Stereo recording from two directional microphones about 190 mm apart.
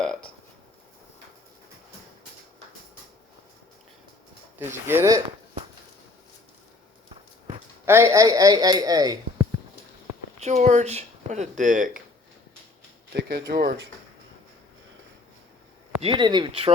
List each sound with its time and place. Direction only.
0.0 s burping: 5° left (ahead or behind)
4.5 s speech: 10° right (ahead or behind)
7.9 s speech: 15° right (ahead or behind)
10.4 s speech: 35° right (ahead or behind)
13.1 s speech: 55° right (ahead or behind)
16.0 s speech: 25° right (ahead or behind)